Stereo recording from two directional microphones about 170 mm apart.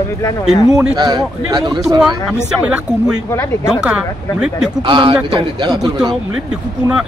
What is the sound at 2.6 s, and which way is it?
A man's voice, 5° right (ahead or behind).